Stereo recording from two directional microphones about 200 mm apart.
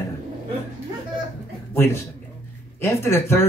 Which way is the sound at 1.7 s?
10° left (ahead or behind).